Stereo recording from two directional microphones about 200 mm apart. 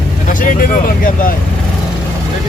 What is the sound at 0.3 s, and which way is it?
Speech, 40° left (ahead or behind).